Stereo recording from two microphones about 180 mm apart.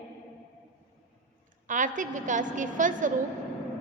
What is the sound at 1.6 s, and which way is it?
A woman's voice, 45° right (ahead or behind).